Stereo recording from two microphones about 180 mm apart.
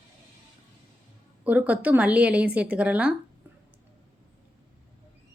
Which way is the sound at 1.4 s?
10° right (ahead or behind).